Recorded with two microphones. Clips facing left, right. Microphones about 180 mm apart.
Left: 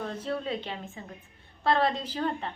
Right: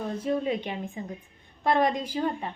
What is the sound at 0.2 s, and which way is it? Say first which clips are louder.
A woman's voice: right 8 dB; 15° right (ahead or behind).